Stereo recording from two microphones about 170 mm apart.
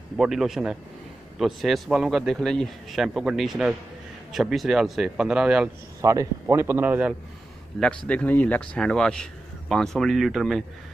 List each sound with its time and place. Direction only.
0.2 s speech: centre (ahead or behind)
5.9 s a man's voice: 20° right (ahead or behind)
7.7 s speech: centre (ahead or behind)